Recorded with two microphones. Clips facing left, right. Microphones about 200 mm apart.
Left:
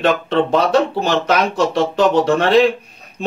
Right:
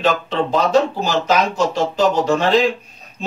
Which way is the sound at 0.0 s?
65° left (ahead or behind).